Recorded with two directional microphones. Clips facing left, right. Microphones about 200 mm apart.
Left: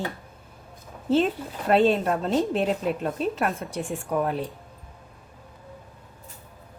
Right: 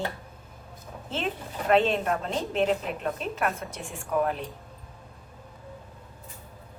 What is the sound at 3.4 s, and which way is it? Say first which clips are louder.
Speech: left 3 dB; centre (ahead or behind).